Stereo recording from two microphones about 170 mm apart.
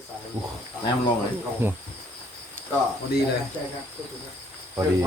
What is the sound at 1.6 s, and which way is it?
Speech, 15° right (ahead or behind).